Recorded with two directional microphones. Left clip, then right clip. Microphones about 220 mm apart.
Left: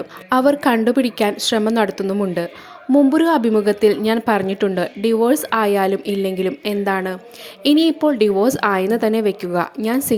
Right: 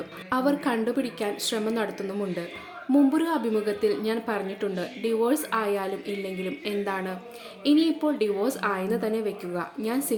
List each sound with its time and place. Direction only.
0.3 s a woman's voice: 35° left (ahead or behind)